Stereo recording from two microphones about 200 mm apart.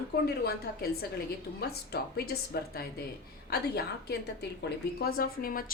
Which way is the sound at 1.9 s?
50° left (ahead or behind).